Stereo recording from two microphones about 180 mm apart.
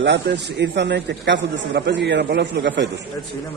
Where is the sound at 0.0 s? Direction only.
70° right (ahead or behind).